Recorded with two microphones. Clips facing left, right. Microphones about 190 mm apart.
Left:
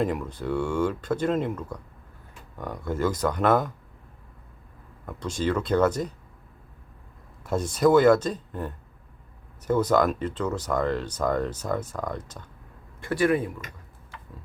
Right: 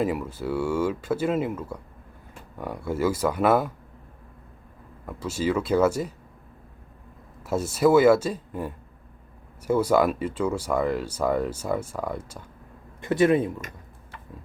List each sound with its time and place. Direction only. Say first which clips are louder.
0.0 s speech: right 1 dB; 5° right (ahead or behind)
5.0 s speech: right 1 dB; 5° right (ahead or behind)
7.4 s speech: right 1 dB; 5° right (ahead or behind)
13.0 s speech: right 3 dB; 20° right (ahead or behind)